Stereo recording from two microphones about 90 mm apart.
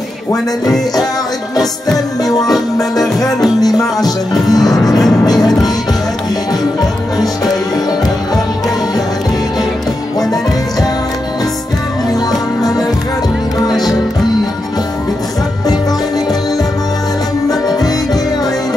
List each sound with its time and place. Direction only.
2.2 s speech: 45° left (ahead or behind)
2.5 s music: centre (ahead or behind)
3.6 s speech: 45° left (ahead or behind)
4.6 s music: 5° left (ahead or behind)
5.2 s music: 45° left (ahead or behind)
7.2 s music: 45° left (ahead or behind)
10.1 s music: 45° left (ahead or behind)
12.1 s music: 45° left (ahead or behind)
17.5 s music: 45° left (ahead or behind)